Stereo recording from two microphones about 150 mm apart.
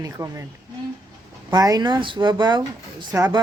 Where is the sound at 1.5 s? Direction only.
25° right (ahead or behind).